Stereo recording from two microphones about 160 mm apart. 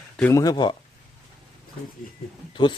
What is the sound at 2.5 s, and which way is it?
Speech, 30° left (ahead or behind).